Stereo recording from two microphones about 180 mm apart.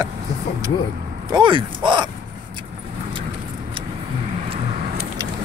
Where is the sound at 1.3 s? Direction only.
25° right (ahead or behind).